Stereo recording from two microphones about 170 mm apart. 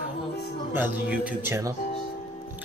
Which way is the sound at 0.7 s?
10° right (ahead or behind).